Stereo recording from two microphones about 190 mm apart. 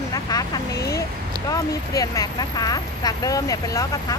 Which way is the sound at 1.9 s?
20° left (ahead or behind).